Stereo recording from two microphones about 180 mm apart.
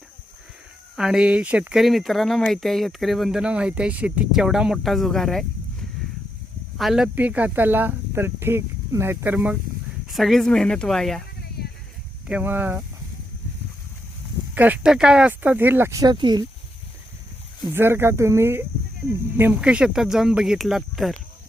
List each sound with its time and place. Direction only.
0.9 s speech: 5° right (ahead or behind)
6.7 s speech: centre (ahead or behind)
11.6 s a sound: 60° left (ahead or behind)
12.3 s speech: 10° right (ahead or behind)
14.5 s speech: 10° right (ahead or behind); by 16.5 s 25° right (ahead or behind)
17.7 s speech: 10° right (ahead or behind)